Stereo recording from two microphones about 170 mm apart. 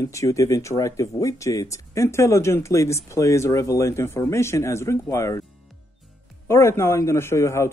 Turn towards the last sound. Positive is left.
turn(degrees=15)  # may be behind; listen again after turning